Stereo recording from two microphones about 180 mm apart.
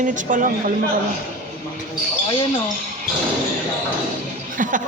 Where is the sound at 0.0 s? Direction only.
45° right (ahead or behind).